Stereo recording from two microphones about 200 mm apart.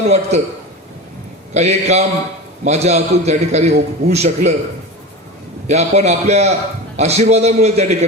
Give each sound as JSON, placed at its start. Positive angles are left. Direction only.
{"t": 0.0, "sound": "a man's voice", "side_deg": -35}
{"t": 1.5, "sound": "a man's voice", "side_deg": -35}
{"t": 5.6, "sound": "a man's voice", "side_deg": -35}